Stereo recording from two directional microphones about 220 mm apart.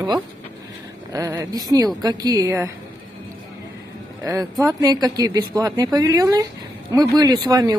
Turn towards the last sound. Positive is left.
turn(degrees=-15)  # may be behind; listen again after turning